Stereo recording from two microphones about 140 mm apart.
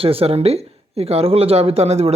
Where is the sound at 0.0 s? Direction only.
40° right (ahead or behind).